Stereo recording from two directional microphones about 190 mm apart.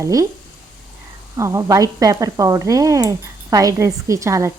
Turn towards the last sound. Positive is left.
turn(degrees=-15)  # may be behind; listen again after turning